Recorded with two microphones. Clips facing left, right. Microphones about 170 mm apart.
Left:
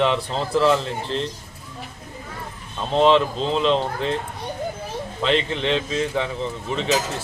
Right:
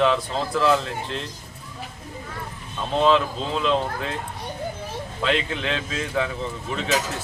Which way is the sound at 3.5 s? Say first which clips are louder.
Left 2 dB; 30° left (ahead or behind).